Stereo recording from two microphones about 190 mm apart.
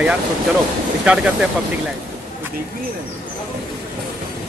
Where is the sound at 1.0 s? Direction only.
5° right (ahead or behind).